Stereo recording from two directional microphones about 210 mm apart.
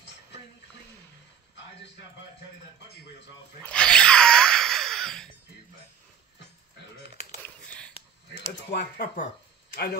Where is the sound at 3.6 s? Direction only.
5° left (ahead or behind).